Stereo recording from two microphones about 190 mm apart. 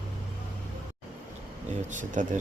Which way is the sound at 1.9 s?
40° right (ahead or behind).